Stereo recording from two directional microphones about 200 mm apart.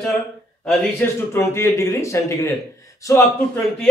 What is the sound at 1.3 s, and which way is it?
A man's voice, 15° left (ahead or behind).